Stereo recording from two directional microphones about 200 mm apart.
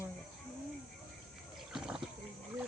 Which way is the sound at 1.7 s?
5° right (ahead or behind).